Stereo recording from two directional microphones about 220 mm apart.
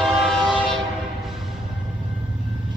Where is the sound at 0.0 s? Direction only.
Centre (ahead or behind).